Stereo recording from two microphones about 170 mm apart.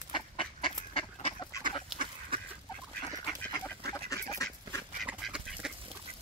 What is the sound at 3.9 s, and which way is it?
Duck, 20° left (ahead or behind).